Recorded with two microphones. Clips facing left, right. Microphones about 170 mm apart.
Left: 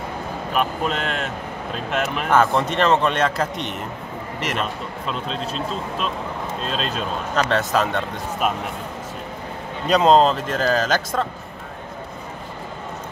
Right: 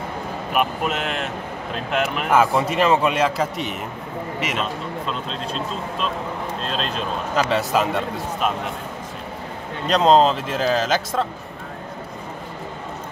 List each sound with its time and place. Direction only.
0.5 s a man's voice: 5° right (ahead or behind)
7.3 s a man's voice: 5° right (ahead or behind)
9.8 s a man's voice: 5° left (ahead or behind)